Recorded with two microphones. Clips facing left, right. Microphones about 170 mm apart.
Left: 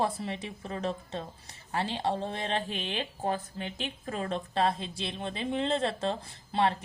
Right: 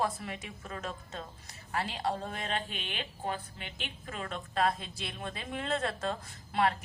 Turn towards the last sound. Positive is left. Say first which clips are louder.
# left 2 dB
turn(degrees=25)  # may be behind; listen again after turning